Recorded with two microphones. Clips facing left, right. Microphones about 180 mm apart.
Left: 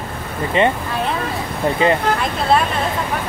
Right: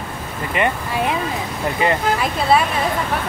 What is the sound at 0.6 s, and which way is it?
Speech, 25° left (ahead or behind).